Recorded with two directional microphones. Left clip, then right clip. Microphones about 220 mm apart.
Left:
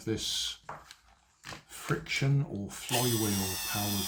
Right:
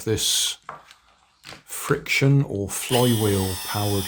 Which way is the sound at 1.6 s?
55° right (ahead or behind).